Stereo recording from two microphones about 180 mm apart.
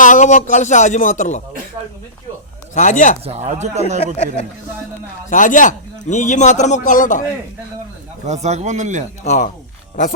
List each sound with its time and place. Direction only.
0.0 s speech: 45° left (ahead or behind)
2.7 s speech: 45° left (ahead or behind)
3.2 s speech: 35° right (ahead or behind)
5.3 s speech: 45° left (ahead or behind)
8.3 s speech: 40° right (ahead or behind)
9.2 s speech: 40° left (ahead or behind)